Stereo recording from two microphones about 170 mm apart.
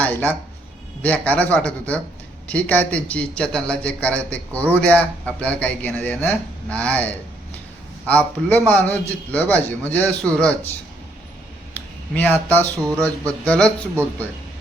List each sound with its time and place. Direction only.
0.0 s a man's voice: 10° left (ahead or behind)
11.7 s a sound: 10° left (ahead or behind)
12.7 s speech: 20° right (ahead or behind)
13.0 s a man's voice: 10° left (ahead or behind)